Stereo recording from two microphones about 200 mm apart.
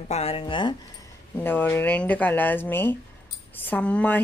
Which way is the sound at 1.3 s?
10° left (ahead or behind).